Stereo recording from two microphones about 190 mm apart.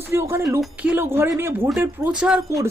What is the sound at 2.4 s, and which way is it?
Speech, 15° right (ahead or behind).